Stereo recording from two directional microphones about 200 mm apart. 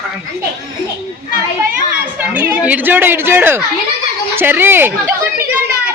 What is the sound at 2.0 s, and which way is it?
Speech, 5° right (ahead or behind).